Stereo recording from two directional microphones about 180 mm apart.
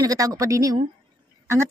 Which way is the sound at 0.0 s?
20° right (ahead or behind).